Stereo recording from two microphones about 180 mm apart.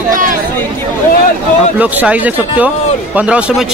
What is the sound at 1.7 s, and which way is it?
Speech, 10° right (ahead or behind).